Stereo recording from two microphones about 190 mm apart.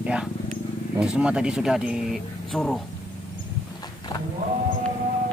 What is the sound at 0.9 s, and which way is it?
Speech, 5° right (ahead or behind).